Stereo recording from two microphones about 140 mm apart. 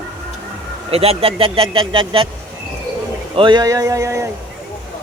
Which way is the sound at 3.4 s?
30° right (ahead or behind).